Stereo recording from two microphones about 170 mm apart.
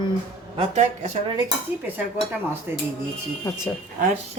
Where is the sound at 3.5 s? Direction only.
15° left (ahead or behind).